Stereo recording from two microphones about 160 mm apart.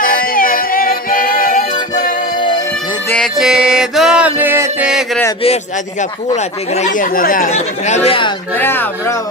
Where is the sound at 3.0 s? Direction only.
5° left (ahead or behind); by 4.8 s 15° right (ahead or behind).